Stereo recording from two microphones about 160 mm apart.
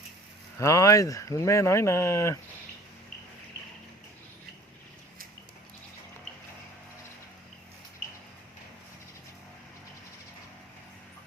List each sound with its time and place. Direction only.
0.6 s speech: 20° left (ahead or behind)